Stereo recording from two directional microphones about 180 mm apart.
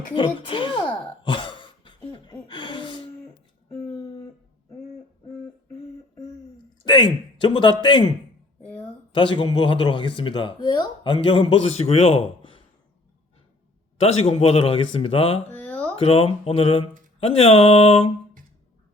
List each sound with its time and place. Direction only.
0.1 s sigh: 25° left (ahead or behind)
2.1 s gasp: 25° left (ahead or behind)
6.8 s speech: 25° left (ahead or behind)
9.1 s speech: 25° left (ahead or behind)
14.0 s speech: 35° left (ahead or behind)
15.4 s a sound: 5° left (ahead or behind)
16.0 s speech: 35° left (ahead or behind)